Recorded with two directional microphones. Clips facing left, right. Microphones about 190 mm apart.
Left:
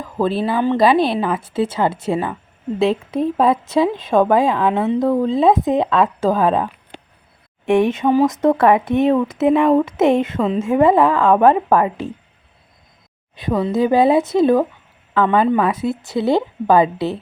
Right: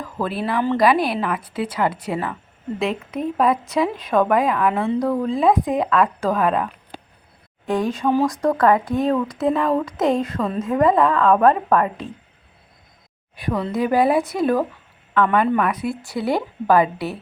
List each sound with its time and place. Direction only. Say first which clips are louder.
0.0 s speech: left 6 dB; 25° left (ahead or behind)
13.3 s speech: left 5 dB; 25° left (ahead or behind)